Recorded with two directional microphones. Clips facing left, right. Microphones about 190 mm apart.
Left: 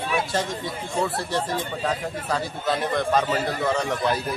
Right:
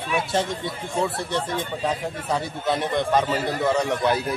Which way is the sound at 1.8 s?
20° right (ahead or behind).